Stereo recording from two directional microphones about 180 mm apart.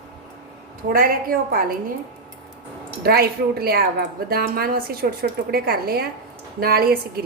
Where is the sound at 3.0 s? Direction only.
60° right (ahead or behind).